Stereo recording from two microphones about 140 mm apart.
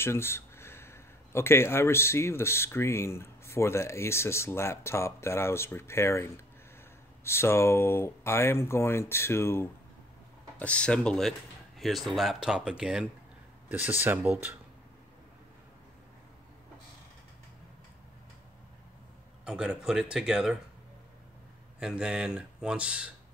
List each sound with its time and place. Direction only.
0.0 s speech: 20° left (ahead or behind); by 14.5 s 15° right (ahead or behind)
19.4 s speech: 5° right (ahead or behind)
21.7 s speech: 5° right (ahead or behind)